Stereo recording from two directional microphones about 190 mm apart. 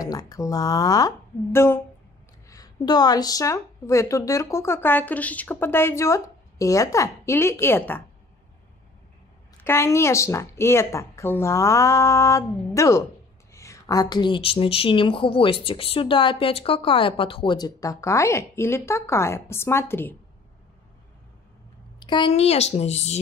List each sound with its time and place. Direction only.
0.0 s a woman's voice: 20° left (ahead or behind)
9.6 s a woman's voice: 15° left (ahead or behind)
22.0 s a woman's voice: 25° left (ahead or behind)